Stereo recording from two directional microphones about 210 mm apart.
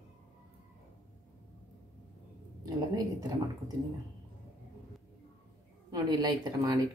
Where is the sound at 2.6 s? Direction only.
15° right (ahead or behind).